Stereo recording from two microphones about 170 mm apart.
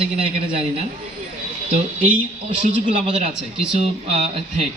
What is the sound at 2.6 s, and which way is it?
A man's voice, 45° right (ahead or behind).